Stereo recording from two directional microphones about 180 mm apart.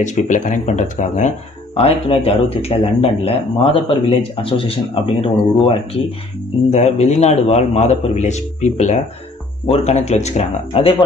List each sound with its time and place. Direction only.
0.0 s speech: 40° left (ahead or behind)
2.0 s speech: 30° left (ahead or behind)